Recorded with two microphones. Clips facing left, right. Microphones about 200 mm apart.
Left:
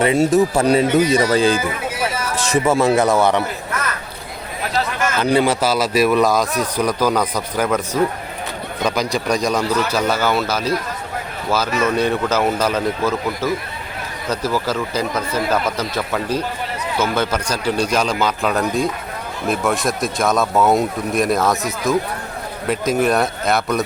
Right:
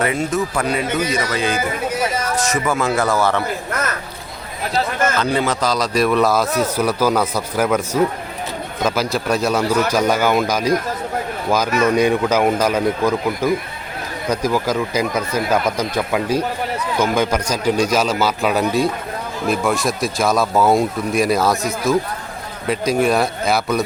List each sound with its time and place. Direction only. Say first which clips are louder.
0.6 s a man's voice: left 6 dB; 35° left (ahead or behind)
2.8 s speech: left 1 dB; 20° left (ahead or behind)
5.2 s a man's voice: left 3 dB; 15° left (ahead or behind); by 23.8 s centre (ahead or behind)